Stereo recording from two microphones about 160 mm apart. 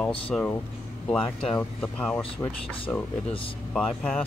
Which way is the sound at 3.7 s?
5° left (ahead or behind).